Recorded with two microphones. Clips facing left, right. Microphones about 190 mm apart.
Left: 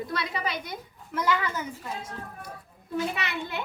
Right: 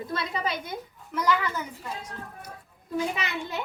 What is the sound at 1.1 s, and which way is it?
Speech, 10° left (ahead or behind).